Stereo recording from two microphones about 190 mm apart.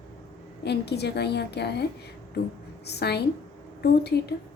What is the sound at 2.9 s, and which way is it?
A woman's voice, 60° left (ahead or behind).